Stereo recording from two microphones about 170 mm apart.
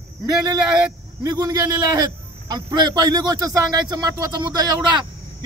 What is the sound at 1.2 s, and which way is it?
A man's voice, 20° right (ahead or behind).